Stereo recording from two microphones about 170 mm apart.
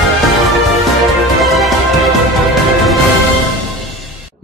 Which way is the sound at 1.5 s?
Centre (ahead or behind).